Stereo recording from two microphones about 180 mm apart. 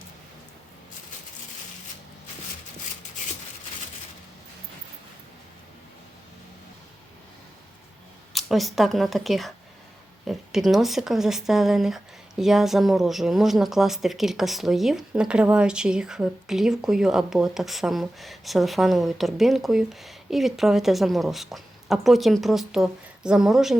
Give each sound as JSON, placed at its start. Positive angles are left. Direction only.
{"t": 8.3, "sound": "speech", "side_deg": 0}